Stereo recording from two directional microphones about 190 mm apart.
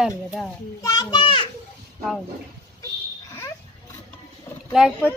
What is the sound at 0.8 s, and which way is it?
Speech, 20° left (ahead or behind).